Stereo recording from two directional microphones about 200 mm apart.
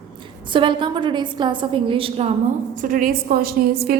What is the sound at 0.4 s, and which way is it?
A woman's voice, 25° right (ahead or behind).